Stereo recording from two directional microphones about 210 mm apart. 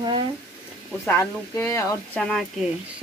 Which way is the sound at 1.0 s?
10° left (ahead or behind).